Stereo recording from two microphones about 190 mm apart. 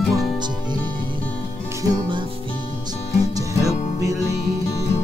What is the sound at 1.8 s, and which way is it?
Music, 25° right (ahead or behind).